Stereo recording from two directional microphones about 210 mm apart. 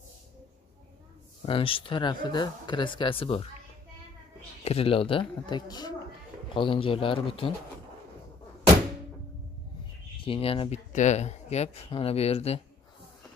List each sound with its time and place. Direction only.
1.4 s speech: 25° left (ahead or behind)
4.6 s speech: 25° left (ahead or behind)
10.1 s speech: 25° left (ahead or behind)